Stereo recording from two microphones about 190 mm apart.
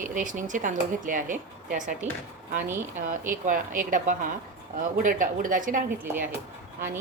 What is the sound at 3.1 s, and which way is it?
A woman's voice, 45° right (ahead or behind).